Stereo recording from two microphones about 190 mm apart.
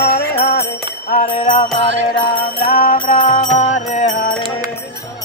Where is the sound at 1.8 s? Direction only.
70° right (ahead or behind).